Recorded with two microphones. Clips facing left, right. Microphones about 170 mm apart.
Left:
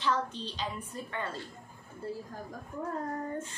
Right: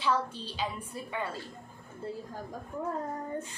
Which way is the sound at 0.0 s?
10° right (ahead or behind).